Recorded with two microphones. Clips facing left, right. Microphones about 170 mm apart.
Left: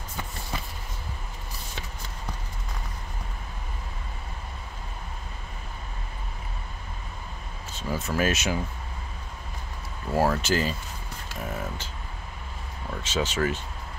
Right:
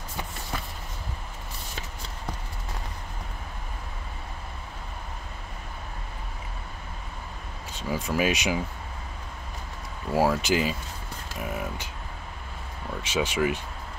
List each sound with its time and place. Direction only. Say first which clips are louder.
7.7 s speech: right 1 dB; 10° right (ahead or behind)
10.1 s speech: right 1 dB; 10° right (ahead or behind)
11.4 s mechanisms: right 1 dB; 15° right (ahead or behind)
13.0 s speech: right 1 dB; 10° right (ahead or behind)